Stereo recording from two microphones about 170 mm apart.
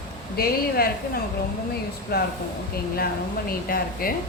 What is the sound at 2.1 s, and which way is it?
Speech, 65° left (ahead or behind).